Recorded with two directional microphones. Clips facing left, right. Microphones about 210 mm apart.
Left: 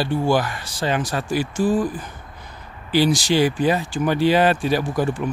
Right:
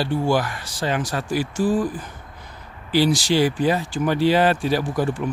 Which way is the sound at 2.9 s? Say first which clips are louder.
Left 1 dB; 15° left (ahead or behind).